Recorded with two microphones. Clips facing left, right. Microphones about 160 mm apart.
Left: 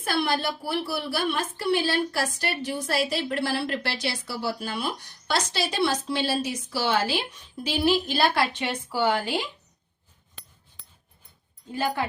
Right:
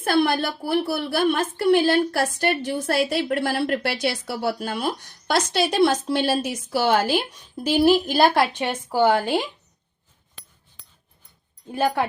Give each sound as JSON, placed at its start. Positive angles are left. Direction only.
{"t": 0.0, "sound": "a woman's voice", "side_deg": -50}
{"t": 11.7, "sound": "speech", "side_deg": -55}